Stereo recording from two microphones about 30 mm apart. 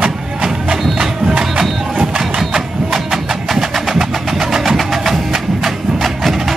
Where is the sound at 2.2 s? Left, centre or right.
Centre.